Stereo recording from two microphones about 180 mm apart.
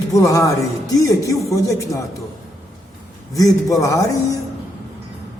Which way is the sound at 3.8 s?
20° left (ahead or behind).